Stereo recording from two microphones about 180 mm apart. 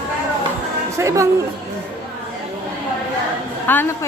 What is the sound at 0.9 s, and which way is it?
Speech, 15° right (ahead or behind).